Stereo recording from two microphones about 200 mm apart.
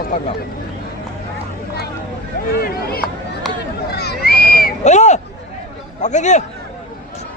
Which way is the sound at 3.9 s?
55° left (ahead or behind).